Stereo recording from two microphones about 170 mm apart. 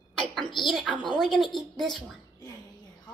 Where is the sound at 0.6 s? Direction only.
Centre (ahead or behind).